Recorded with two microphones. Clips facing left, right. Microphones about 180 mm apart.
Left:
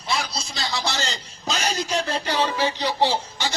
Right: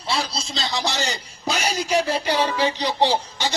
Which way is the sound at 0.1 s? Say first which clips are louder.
Right 2 dB; 30° right (ahead or behind).